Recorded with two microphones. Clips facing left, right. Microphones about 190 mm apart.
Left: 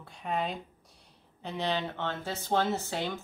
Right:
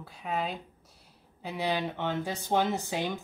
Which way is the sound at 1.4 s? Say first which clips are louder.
Right 1 dB; 10° right (ahead or behind).